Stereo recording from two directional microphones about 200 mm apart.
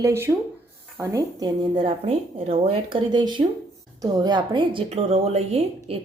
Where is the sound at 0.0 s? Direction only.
10° right (ahead or behind).